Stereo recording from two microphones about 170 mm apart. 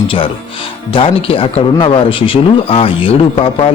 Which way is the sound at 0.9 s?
35° left (ahead or behind).